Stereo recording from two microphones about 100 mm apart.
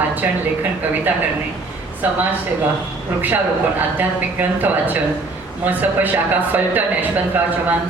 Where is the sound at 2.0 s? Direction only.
20° right (ahead or behind).